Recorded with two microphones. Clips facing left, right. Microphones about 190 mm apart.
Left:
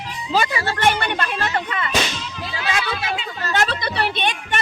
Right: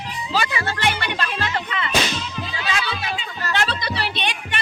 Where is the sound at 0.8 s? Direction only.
50° left (ahead or behind).